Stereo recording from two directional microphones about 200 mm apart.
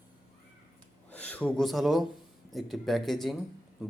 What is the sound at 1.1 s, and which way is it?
A man's voice, 5° left (ahead or behind).